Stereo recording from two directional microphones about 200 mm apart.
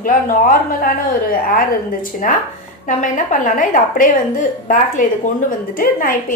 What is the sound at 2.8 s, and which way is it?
A woman's voice, 40° left (ahead or behind).